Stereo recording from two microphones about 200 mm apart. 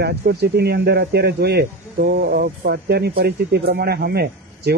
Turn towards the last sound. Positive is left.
turn(degrees=-50)  # may be behind; listen again after turning